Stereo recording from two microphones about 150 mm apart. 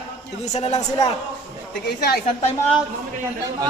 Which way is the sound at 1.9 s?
90° left.